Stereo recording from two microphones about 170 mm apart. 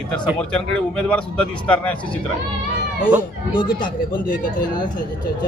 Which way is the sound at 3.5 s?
25° left (ahead or behind).